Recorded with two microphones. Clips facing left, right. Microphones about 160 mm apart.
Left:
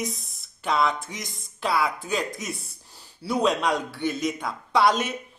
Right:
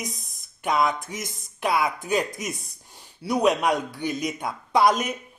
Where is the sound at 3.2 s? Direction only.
20° right (ahead or behind).